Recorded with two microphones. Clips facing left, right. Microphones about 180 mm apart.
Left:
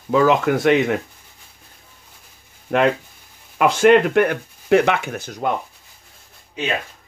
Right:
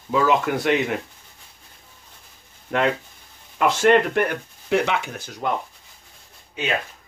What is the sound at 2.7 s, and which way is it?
Speech, 55° left (ahead or behind).